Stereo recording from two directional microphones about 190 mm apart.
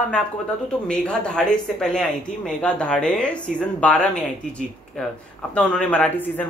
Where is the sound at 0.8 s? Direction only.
5° left (ahead or behind).